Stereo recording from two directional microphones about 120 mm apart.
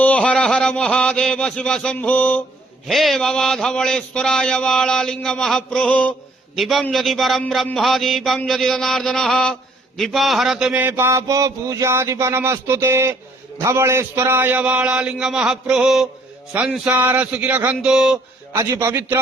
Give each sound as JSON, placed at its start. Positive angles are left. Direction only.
{"t": 0.0, "sound": "a man's voice", "side_deg": 10}
{"t": 2.8, "sound": "a man's voice", "side_deg": 0}
{"t": 6.6, "sound": "a man's voice", "side_deg": 0}
{"t": 10.0, "sound": "a sound", "side_deg": 0}
{"t": 13.6, "sound": "a man's voice", "side_deg": -25}
{"t": 18.5, "sound": "a sound", "side_deg": -25}